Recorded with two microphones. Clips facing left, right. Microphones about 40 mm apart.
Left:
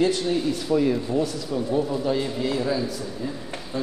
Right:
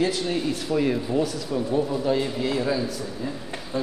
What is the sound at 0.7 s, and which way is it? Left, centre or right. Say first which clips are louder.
Speech: left 2 dB; centre.